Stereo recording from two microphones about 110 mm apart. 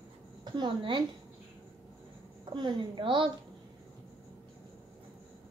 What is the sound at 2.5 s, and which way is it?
Speech, 45° right (ahead or behind).